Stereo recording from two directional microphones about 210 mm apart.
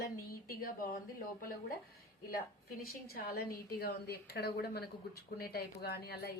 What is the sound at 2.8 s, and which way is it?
A woman's voice, 45° left (ahead or behind).